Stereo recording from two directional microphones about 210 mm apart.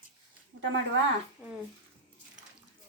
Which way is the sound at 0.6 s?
65° right (ahead or behind).